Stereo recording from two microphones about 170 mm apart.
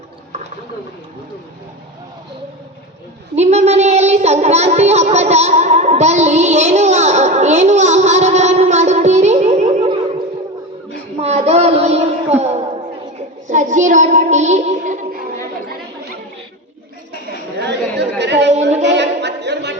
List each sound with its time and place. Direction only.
3.3 s music: 40° right (ahead or behind)
11.2 s child singing: 40° right (ahead or behind)
12.4 s a sound: 40° right (ahead or behind)
13.1 s child singing: 45° right (ahead or behind)
17.7 s chatter: 90° right
18.9 s a sound: 90° right